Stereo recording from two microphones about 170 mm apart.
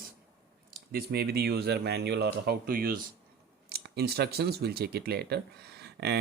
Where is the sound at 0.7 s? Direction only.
65° right (ahead or behind).